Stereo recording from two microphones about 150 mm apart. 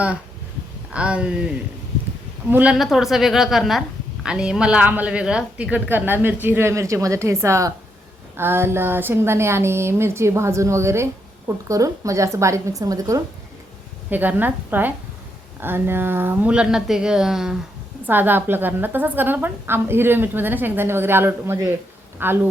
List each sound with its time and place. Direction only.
0.9 s a woman's voice: 5° right (ahead or behind); by 13.2 s 25° right (ahead or behind)
14.1 s a woman's voice: 10° right (ahead or behind)